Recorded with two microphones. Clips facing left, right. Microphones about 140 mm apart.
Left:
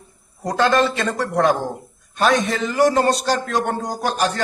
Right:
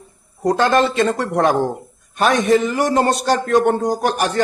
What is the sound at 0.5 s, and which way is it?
Speech, 20° right (ahead or behind).